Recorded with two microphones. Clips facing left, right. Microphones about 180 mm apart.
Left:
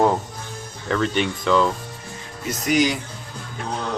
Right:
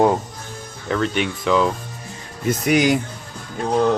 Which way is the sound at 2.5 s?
55° right (ahead or behind).